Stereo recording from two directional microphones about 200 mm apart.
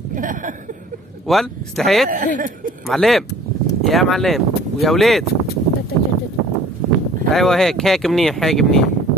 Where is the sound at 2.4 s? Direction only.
45° right (ahead or behind).